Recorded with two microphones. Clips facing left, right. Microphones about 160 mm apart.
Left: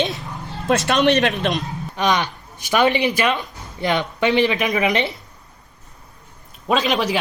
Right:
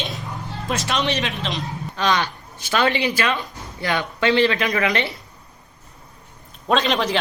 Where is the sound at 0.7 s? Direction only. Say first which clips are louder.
Left 7 dB; 55° left (ahead or behind).